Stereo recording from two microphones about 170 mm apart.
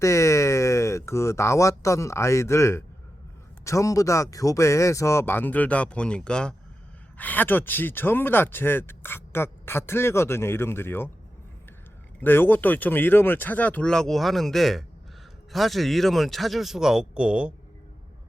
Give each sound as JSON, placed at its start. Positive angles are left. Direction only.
{"t": 0.0, "sound": "speech", "side_deg": 15}
{"t": 12.2, "sound": "speech", "side_deg": 10}